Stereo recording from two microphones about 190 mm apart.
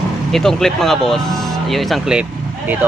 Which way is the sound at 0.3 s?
Centre (ahead or behind).